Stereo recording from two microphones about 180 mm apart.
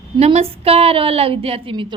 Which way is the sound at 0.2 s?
35° right (ahead or behind).